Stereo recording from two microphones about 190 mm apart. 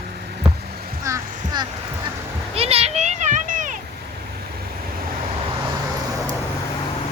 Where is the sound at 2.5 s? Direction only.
30° right (ahead or behind).